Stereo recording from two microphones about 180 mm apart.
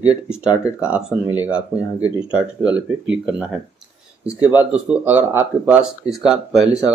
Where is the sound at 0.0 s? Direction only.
5° right (ahead or behind).